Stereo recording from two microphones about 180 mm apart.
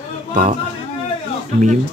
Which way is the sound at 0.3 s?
40° right (ahead or behind).